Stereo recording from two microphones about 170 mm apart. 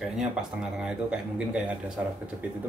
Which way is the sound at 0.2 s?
5° right (ahead or behind).